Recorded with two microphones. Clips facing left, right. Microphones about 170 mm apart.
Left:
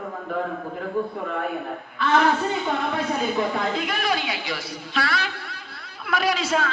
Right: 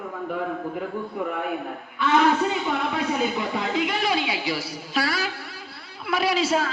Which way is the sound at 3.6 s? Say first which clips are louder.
Right 1 dB; 20° right (ahead or behind).